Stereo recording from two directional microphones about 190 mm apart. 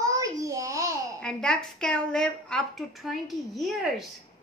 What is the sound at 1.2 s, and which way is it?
A woman's voice, 5° left (ahead or behind).